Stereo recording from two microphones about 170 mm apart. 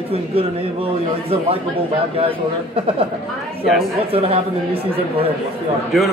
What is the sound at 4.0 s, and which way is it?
A man's voice, 35° right (ahead or behind).